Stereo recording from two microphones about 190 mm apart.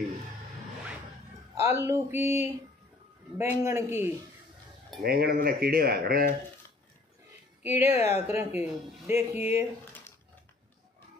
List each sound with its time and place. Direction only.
1.6 s speech: 15° right (ahead or behind)
5.0 s speech: 55° right (ahead or behind)
7.6 s speech: 15° right (ahead or behind)